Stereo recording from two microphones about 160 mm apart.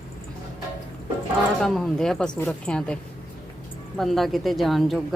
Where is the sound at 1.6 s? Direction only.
Centre (ahead or behind).